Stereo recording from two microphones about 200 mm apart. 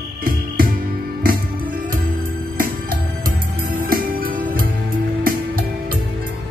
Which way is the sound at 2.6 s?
45° right (ahead or behind).